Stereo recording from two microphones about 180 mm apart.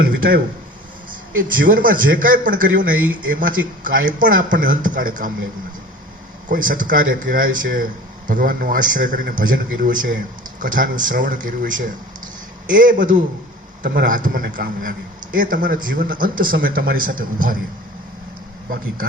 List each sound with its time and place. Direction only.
0.2 s a man's voice: 55° right (ahead or behind)
6.5 s a man's voice: 50° right (ahead or behind)